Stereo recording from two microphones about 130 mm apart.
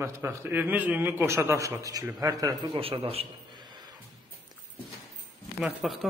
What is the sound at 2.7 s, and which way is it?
Speech, 45° right (ahead or behind).